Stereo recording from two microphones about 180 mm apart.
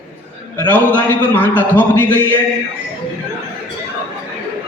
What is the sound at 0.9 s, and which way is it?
A man's voice, 10° left (ahead or behind).